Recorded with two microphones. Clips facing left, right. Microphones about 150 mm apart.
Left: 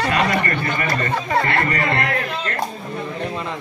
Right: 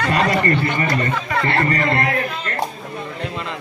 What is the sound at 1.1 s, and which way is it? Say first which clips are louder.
Speech: left 2 dB; 35° left (ahead or behind).